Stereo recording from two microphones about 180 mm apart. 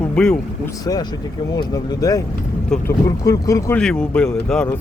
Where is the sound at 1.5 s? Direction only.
20° left (ahead or behind).